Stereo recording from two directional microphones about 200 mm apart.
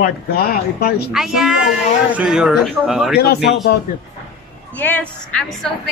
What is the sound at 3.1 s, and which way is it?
Speech, 50° left (ahead or behind).